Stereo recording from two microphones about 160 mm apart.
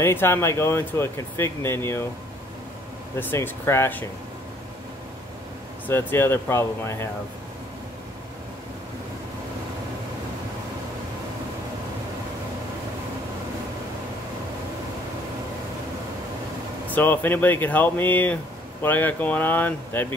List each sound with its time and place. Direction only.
0.0 s speech: 15° left (ahead or behind)
3.2 s speech: 10° left (ahead or behind)
5.9 s speech: 15° left (ahead or behind)
16.8 s speech: 10° left (ahead or behind)